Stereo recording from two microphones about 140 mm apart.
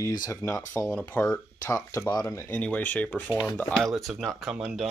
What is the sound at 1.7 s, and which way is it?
Speech, 20° left (ahead or behind).